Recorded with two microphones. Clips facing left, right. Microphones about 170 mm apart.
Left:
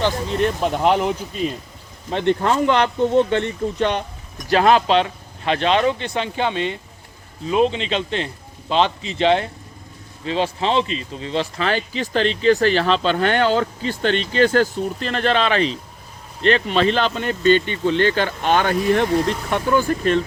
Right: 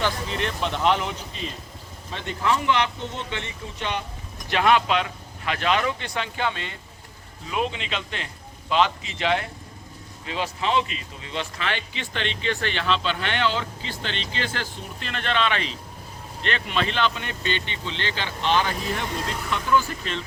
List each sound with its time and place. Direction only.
0.4 s speech: 40° left (ahead or behind)
2.0 s speech: 55° left (ahead or behind)
4.4 s speech: 35° left (ahead or behind)